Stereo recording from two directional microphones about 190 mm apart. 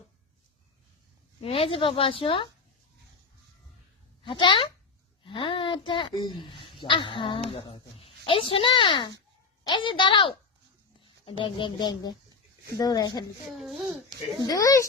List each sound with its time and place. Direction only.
1.4 s speech: 30° left (ahead or behind)
4.2 s speech: 25° left (ahead or behind)
13.6 s a child's voice: centre (ahead or behind)
13.8 s speech: 20° right (ahead or behind)
14.4 s speech: 20° left (ahead or behind)